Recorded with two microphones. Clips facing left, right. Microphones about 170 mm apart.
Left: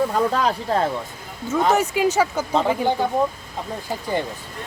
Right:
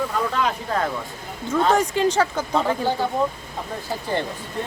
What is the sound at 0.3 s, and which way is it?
Speech, 35° left (ahead or behind).